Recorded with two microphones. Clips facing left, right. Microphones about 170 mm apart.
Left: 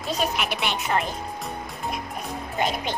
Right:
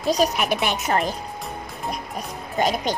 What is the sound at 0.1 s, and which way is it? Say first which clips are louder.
Speech: right 6 dB; 40° right (ahead or behind).